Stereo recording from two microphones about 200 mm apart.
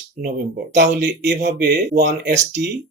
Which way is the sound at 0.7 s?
60° right (ahead or behind).